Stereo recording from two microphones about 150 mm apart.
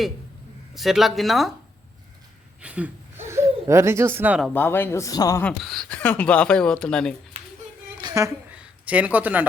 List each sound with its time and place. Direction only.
0.7 s speech: centre (ahead or behind)
2.6 s a sound: 10° right (ahead or behind)
4.5 s speech: 15° left (ahead or behind)
5.4 s speech: 5° left (ahead or behind)
7.9 s a sound: 25° right (ahead or behind)
8.5 s speech: 10° right (ahead or behind)